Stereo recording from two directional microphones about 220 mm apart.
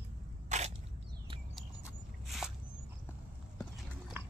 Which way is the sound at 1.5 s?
Centre (ahead or behind).